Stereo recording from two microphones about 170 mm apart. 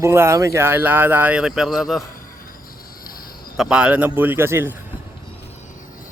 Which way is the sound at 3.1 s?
60° left (ahead or behind).